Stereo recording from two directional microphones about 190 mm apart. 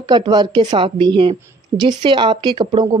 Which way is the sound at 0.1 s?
20° right (ahead or behind).